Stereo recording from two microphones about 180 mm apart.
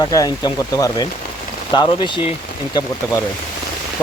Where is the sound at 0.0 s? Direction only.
20° left (ahead or behind).